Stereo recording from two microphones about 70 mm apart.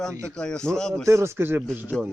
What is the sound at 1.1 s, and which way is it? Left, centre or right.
Speech, right.